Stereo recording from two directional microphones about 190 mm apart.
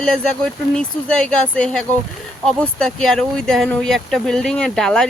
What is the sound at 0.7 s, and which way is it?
Speech, 5° left (ahead or behind).